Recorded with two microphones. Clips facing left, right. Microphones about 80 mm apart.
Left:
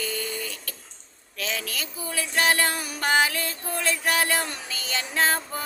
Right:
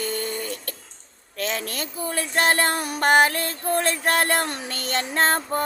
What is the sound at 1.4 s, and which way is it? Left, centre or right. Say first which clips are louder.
Speech: right 4 dB; right.